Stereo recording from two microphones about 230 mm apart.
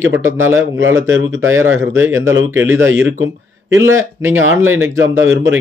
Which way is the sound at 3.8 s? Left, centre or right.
Right.